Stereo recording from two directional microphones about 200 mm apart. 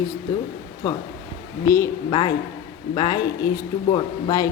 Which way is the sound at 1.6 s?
15° left (ahead or behind).